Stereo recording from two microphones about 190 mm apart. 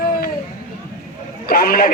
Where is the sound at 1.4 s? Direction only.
50° left (ahead or behind).